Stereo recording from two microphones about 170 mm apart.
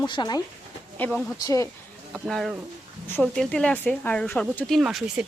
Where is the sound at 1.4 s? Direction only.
20° left (ahead or behind).